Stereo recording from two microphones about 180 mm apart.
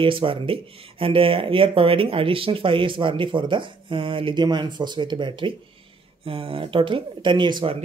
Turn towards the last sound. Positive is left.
turn(degrees=-25)  # may be behind; listen again after turning